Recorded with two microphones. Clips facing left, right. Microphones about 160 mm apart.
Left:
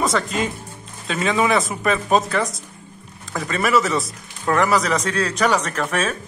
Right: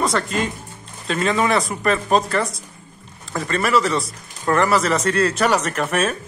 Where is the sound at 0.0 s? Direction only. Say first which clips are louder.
Even; centre (ahead or behind).